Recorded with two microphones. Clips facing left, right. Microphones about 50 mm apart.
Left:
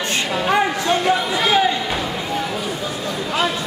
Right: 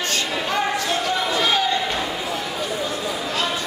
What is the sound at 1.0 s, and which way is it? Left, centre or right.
Music, centre.